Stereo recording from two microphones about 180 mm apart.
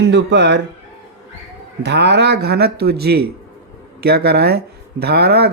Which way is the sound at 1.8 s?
70° right (ahead or behind).